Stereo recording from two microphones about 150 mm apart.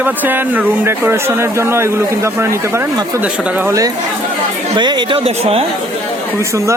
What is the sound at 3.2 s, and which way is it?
Speech, 10° right (ahead or behind).